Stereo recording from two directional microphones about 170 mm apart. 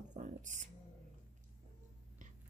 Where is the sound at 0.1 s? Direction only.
45° right (ahead or behind).